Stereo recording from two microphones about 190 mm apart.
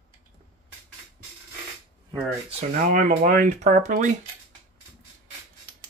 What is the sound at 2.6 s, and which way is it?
Speech, 40° right (ahead or behind).